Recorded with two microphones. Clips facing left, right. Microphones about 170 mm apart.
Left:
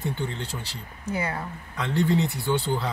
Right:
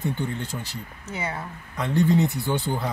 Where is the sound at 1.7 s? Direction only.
15° right (ahead or behind).